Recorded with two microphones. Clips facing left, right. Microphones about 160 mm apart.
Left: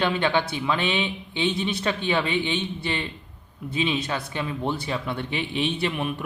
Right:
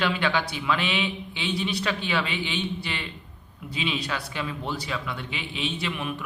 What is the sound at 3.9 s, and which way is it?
A man's voice, 25° left (ahead or behind).